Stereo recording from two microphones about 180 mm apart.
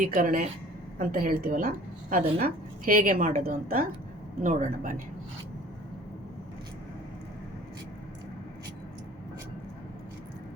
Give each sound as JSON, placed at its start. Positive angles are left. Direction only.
{"t": 0.0, "sound": "a woman's voice", "side_deg": -50}